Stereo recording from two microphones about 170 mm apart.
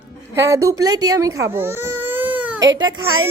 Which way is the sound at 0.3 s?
15° right (ahead or behind).